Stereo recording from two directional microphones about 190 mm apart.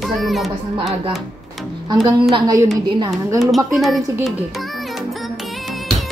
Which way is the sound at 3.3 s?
Centre (ahead or behind).